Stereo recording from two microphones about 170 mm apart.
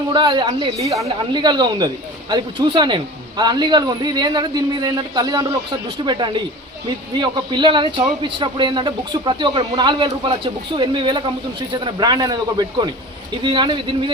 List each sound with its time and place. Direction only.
0.1 s speech: 25° right (ahead or behind)